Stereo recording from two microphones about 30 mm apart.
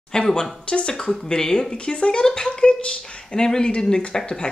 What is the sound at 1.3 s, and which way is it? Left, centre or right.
Speech, centre.